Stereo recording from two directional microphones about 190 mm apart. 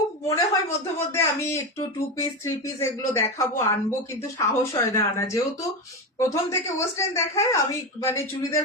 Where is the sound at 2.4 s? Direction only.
15° left (ahead or behind).